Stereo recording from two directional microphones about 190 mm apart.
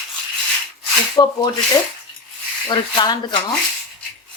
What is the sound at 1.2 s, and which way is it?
Speech, 20° left (ahead or behind).